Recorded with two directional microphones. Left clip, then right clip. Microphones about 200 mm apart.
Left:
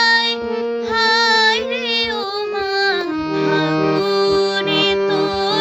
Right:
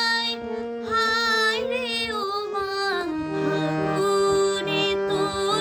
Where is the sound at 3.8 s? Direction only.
45° left (ahead or behind).